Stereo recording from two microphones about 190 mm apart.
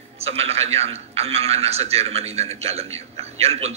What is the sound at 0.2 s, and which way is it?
A man's voice, 30° right (ahead or behind).